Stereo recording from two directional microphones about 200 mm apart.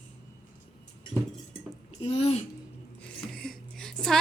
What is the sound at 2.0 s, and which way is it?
Speech, 30° left (ahead or behind).